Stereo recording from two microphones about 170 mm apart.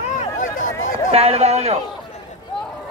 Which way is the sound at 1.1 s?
35° right (ahead or behind).